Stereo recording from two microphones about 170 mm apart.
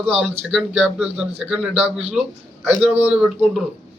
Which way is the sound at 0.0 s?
Centre (ahead or behind).